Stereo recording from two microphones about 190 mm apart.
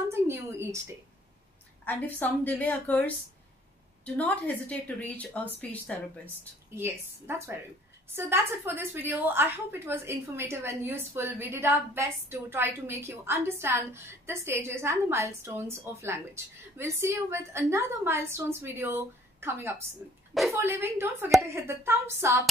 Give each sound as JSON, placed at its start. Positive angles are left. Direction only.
{"t": 0.1, "sound": "a sound", "side_deg": -15}
{"t": 1.9, "sound": "speech", "side_deg": 10}
{"t": 6.7, "sound": "a woman's voice", "side_deg": -15}